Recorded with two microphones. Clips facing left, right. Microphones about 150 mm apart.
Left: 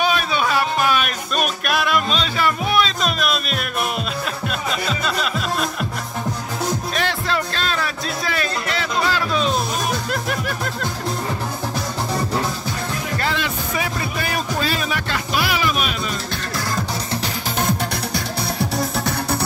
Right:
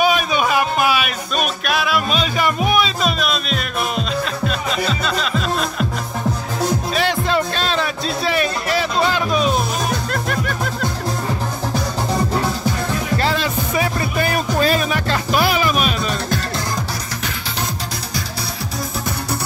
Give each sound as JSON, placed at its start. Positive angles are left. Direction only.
{"t": 0.0, "sound": "music", "side_deg": -15}
{"t": 6.9, "sound": "music", "side_deg": -10}
{"t": 9.8, "sound": "music", "side_deg": 5}
{"t": 13.2, "sound": "music", "side_deg": -35}
{"t": 17.6, "sound": "music", "side_deg": 55}